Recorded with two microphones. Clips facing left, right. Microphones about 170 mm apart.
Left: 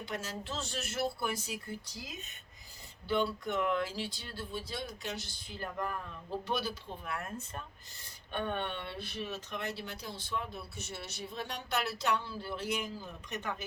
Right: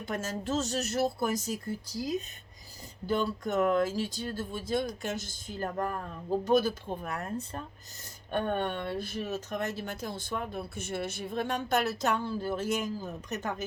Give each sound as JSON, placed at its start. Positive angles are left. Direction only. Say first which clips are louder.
{"t": 0.0, "sound": "speech", "louder": "right 6 dB", "side_deg": -45}
{"t": 8.3, "sound": "speech", "louder": "right 6 dB", "side_deg": -45}